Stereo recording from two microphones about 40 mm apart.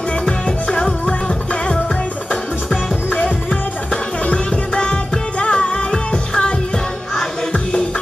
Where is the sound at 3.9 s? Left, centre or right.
Left.